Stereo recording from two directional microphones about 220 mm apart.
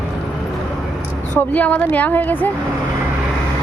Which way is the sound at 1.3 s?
5° left (ahead or behind).